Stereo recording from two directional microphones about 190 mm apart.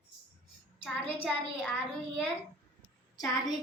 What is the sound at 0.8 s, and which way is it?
Speech, 5° left (ahead or behind).